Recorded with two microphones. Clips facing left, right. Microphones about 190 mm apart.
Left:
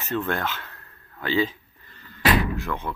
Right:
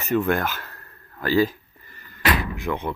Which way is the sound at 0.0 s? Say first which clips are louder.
Right 5 dB; 10° right (ahead or behind).